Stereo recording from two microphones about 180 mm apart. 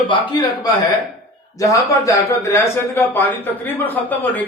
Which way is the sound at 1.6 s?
15° left (ahead or behind).